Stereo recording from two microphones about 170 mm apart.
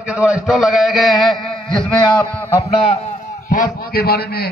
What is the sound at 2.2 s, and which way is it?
Speech, 15° left (ahead or behind).